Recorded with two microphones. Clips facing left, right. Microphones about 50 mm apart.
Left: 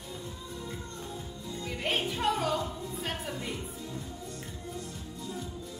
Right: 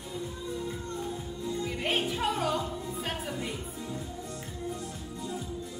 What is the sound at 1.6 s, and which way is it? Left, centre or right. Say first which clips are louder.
Music: even; centre.